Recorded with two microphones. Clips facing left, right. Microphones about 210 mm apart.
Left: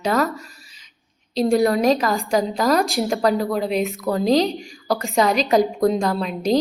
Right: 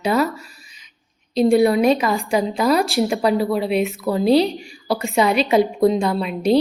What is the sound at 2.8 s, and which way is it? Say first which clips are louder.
A woman's voice: right 1 dB; 5° right (ahead or behind).